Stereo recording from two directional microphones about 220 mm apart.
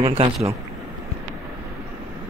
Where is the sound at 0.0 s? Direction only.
25° right (ahead or behind).